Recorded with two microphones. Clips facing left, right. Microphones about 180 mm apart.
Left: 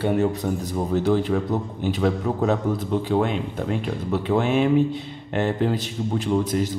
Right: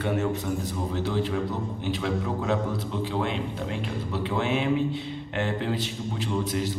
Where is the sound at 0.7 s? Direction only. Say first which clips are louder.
Left 10 dB; 50° left (ahead or behind).